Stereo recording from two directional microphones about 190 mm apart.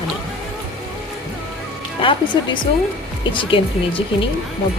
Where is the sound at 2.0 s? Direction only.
25° left (ahead or behind).